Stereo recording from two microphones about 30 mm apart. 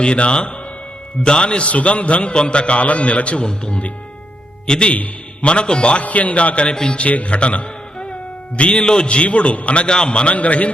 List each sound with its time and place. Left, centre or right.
0.0 s a man's voice: left
2.8 s a man's voice: left
4.6 s a man's voice: left
6.0 s a man's voice: left
6.7 s a man's voice: left
7.1 s a man's voice: left
8.8 s a man's voice: left
9.8 s a man's voice: left
10.3 s a man's voice: left